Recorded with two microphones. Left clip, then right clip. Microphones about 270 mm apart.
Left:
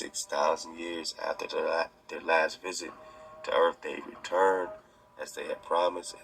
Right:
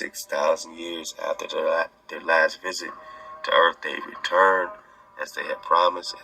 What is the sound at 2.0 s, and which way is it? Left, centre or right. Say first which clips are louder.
Speech: right 7 dB; right.